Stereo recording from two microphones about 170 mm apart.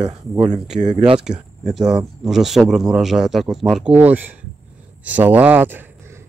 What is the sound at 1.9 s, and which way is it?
Speech, centre (ahead or behind).